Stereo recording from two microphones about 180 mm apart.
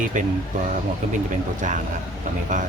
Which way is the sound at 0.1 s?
45° right (ahead or behind).